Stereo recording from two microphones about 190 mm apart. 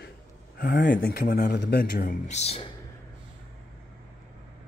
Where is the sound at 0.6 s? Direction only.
45° left (ahead or behind).